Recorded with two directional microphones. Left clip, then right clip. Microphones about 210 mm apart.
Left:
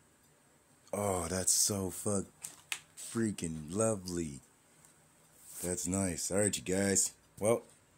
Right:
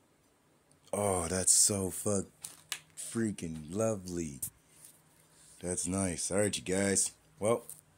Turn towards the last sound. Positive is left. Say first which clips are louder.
# even
turn(degrees=5)  # may be behind; listen again after turning